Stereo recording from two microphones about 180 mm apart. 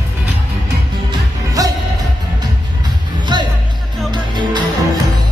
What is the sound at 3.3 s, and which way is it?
Music, 25° right (ahead or behind).